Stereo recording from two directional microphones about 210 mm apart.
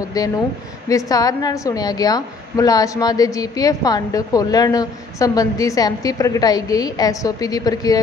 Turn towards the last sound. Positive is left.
turn(degrees=15)  # may be behind; listen again after turning